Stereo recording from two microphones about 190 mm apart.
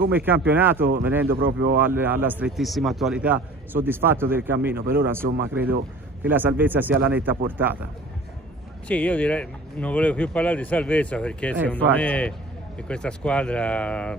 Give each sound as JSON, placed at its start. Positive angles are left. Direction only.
{"t": 0.1, "sound": "a man's voice", "side_deg": -10}
{"t": 1.3, "sound": "speech", "side_deg": -50}
{"t": 1.8, "sound": "a man's voice", "side_deg": -10}
{"t": 8.8, "sound": "a man's voice", "side_deg": 10}